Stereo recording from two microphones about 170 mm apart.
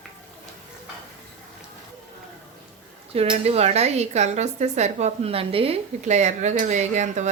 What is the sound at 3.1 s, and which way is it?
Speech, 35° right (ahead or behind).